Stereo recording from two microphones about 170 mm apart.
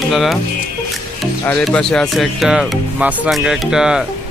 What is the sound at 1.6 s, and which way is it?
Speech, 5° left (ahead or behind).